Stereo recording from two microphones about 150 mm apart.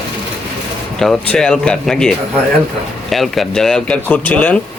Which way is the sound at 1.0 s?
5° left (ahead or behind).